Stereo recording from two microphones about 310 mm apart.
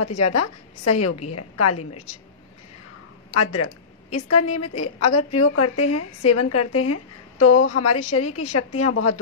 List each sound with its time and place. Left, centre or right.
0.0 s a woman's voice: left
3.3 s a woman's voice: left